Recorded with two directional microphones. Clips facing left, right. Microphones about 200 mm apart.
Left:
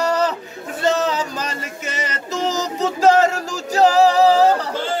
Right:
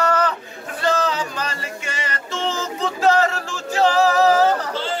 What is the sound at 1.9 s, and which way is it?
Music, 40° left (ahead or behind).